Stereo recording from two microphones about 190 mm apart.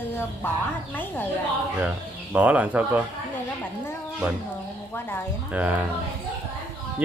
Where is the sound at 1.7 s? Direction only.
10° right (ahead or behind).